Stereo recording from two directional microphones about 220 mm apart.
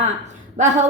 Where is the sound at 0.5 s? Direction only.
35° right (ahead or behind).